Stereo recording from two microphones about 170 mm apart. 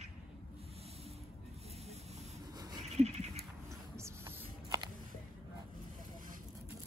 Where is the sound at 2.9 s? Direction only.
40° right (ahead or behind).